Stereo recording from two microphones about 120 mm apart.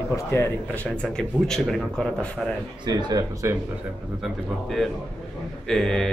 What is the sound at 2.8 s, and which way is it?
Speech, 35° right (ahead or behind).